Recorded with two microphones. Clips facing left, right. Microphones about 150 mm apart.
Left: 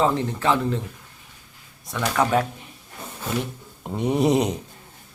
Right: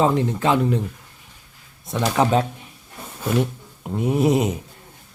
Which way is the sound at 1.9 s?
20° right (ahead or behind).